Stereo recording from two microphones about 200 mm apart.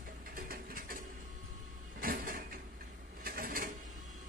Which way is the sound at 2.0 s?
45° right (ahead or behind).